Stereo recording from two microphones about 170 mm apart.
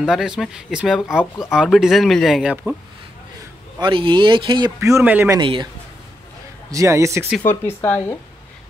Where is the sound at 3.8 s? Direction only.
30° right (ahead or behind); by 5.4 s 10° right (ahead or behind).